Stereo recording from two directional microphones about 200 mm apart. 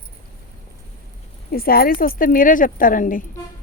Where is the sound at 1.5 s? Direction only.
50° left (ahead or behind).